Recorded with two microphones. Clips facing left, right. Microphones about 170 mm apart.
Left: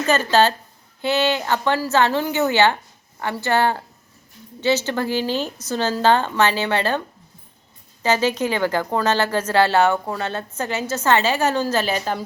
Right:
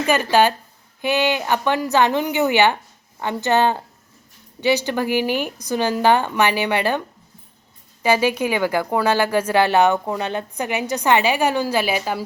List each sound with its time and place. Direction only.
0.0 s a woman's voice: 15° right (ahead or behind)
8.0 s speech: 10° right (ahead or behind)